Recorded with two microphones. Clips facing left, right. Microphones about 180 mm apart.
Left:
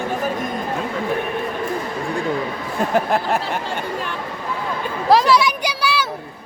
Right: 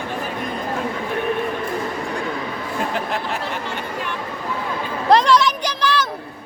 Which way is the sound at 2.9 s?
45° left (ahead or behind).